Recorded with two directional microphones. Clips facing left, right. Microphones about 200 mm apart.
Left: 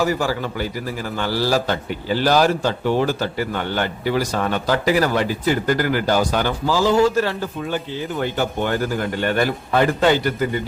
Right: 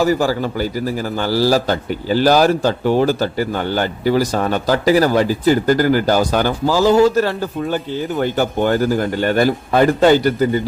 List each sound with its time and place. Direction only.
0.0 s a man's voice: 35° right (ahead or behind)